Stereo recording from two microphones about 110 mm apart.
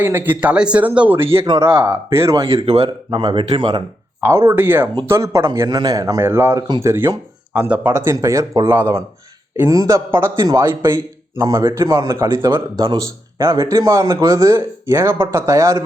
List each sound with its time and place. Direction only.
0.0 s speech: 20° right (ahead or behind); by 2.6 s 35° right (ahead or behind)
2.6 s speech: 50° right (ahead or behind)
4.5 s speech: 20° right (ahead or behind)
12.5 s speech: 40° right (ahead or behind)